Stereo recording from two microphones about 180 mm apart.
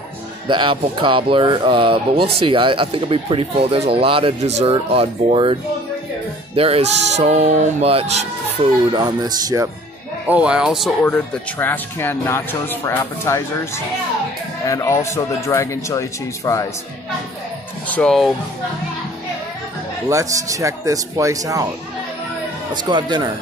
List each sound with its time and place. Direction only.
0.5 s speech: 25° right (ahead or behind)
8.9 s speech: 25° right (ahead or behind)
10.2 s speech: 5° right (ahead or behind)
11.0 s speech: 10° left (ahead or behind)
14.6 s speech: 15° left (ahead or behind)
17.8 s speech: 5° left (ahead or behind)
20.1 s speech: 15° right (ahead or behind)
22.8 s speech: 25° right (ahead or behind)